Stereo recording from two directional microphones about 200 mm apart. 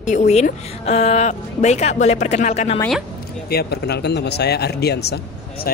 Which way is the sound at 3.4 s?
55° left (ahead or behind).